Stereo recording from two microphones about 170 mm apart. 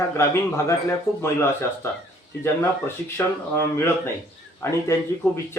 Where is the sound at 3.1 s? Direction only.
15° left (ahead or behind).